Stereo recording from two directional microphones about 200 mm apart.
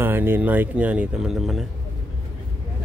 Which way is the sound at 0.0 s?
10° right (ahead or behind).